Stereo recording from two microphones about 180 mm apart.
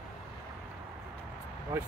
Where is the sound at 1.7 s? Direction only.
15° right (ahead or behind).